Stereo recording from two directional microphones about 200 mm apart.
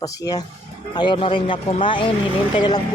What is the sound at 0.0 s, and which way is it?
Speech, 15° left (ahead or behind).